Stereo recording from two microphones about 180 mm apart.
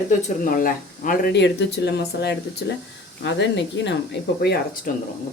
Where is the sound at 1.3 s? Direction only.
70° left (ahead or behind).